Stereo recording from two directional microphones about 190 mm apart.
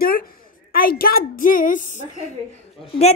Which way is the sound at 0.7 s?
50° left (ahead or behind).